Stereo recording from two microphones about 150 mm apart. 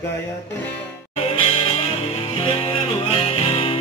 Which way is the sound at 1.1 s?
40° left (ahead or behind).